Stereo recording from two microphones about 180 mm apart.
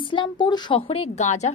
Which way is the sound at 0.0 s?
25° left (ahead or behind).